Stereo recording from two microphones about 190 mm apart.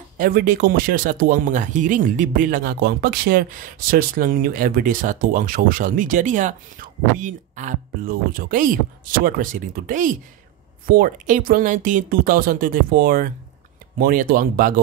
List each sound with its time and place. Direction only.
0.2 s speech: 50° right (ahead or behind)